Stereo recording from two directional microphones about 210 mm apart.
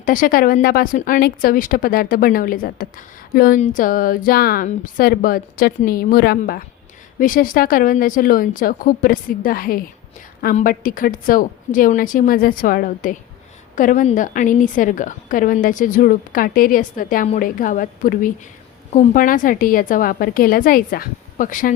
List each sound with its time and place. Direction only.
0.0 s a woman's voice: 40° left (ahead or behind)